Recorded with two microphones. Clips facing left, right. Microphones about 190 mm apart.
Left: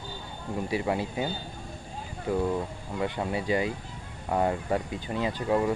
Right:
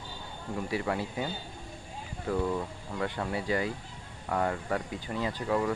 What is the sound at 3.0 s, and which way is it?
Speech, 20° left (ahead or behind).